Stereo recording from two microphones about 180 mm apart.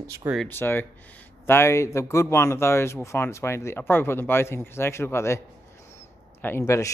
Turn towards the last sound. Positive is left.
turn(degrees=15)  # may be behind; listen again after turning